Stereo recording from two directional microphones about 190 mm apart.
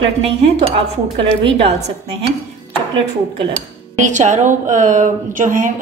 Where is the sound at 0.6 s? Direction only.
30° right (ahead or behind).